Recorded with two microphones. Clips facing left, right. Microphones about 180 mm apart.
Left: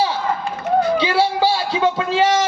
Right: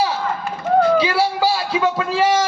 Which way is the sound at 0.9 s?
25° left (ahead or behind).